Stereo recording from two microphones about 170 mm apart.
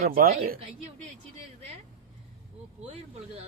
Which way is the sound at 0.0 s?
60° right (ahead or behind).